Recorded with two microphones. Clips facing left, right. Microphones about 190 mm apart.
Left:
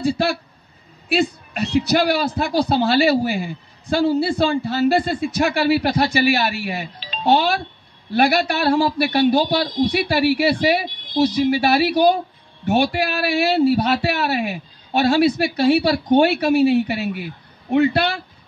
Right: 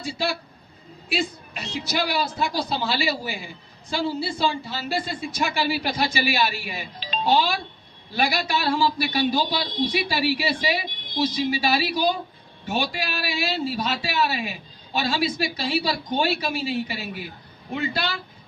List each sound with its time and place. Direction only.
0.0 s a man's voice: 60° left (ahead or behind)